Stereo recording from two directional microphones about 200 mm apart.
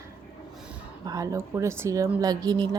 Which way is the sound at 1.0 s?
15° right (ahead or behind).